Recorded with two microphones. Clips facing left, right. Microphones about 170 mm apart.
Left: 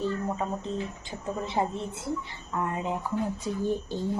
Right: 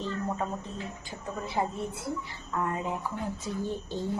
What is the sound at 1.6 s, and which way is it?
A woman's voice, 25° left (ahead or behind).